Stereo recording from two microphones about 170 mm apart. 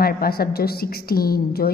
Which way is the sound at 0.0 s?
60° left (ahead or behind).